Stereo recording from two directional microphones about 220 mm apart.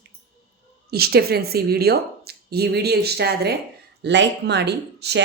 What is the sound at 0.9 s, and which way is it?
Speech, 45° right (ahead or behind).